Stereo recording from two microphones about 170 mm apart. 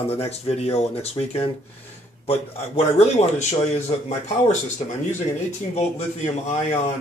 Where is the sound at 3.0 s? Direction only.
40° left (ahead or behind).